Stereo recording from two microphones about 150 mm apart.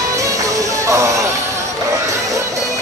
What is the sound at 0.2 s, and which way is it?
Music, 20° right (ahead or behind).